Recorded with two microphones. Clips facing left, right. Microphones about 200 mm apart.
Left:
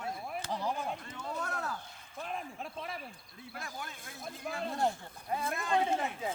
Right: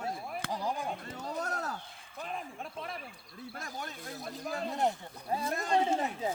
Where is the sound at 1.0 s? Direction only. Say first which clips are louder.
Right 2 dB; 40° right (ahead or behind).